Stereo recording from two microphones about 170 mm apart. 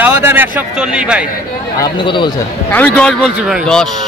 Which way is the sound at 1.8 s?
30° left (ahead or behind).